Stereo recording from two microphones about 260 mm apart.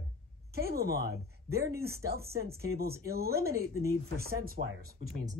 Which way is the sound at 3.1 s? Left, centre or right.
Right.